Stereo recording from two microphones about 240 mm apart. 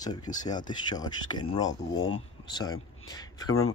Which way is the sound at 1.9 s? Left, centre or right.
Left.